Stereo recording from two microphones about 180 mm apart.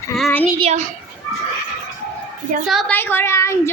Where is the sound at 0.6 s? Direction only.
40° right (ahead or behind).